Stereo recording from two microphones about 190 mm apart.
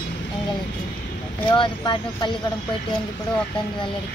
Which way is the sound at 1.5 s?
25° left (ahead or behind).